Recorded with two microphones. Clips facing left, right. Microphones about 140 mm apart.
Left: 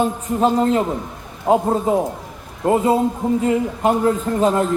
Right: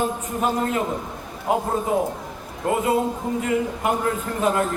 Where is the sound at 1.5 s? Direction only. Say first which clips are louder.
Left 6 dB; 25° left (ahead or behind).